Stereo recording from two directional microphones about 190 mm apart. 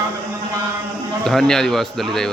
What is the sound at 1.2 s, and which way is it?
A man's voice, centre (ahead or behind).